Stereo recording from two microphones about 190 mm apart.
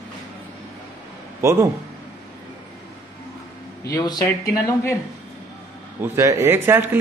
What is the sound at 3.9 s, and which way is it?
Speech, 15° left (ahead or behind).